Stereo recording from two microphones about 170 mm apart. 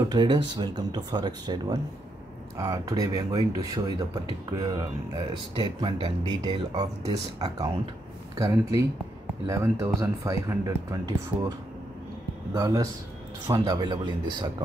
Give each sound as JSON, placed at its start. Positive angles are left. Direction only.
{"t": 0.1, "sound": "speech", "side_deg": -25}
{"t": 12.5, "sound": "speech", "side_deg": -20}